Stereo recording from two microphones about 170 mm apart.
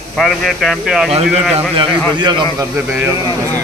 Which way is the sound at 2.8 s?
10° right (ahead or behind).